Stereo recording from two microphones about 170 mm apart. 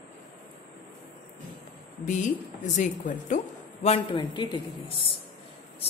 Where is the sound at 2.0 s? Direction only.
45° left (ahead or behind).